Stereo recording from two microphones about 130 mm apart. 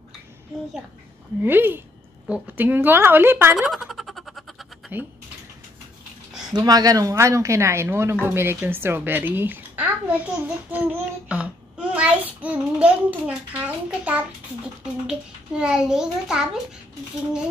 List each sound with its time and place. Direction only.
1.4 s a woman's voice: 15° right (ahead or behind)
3.5 s a sound: centre (ahead or behind)
6.5 s a child's voice: 30° right (ahead or behind); by 16.4 s 5° right (ahead or behind)